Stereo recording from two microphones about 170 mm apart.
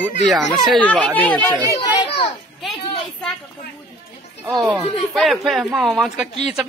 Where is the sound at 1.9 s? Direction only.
30° left (ahead or behind).